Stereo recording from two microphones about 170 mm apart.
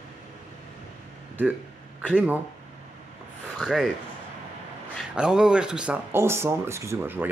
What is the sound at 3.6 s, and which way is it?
Speech, centre (ahead or behind).